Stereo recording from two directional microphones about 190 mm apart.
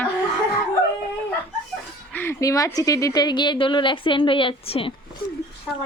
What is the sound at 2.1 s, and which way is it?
A woman's voice, 10° left (ahead or behind).